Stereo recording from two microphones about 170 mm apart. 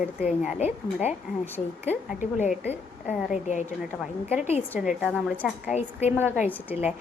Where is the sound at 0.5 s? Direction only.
40° left (ahead or behind).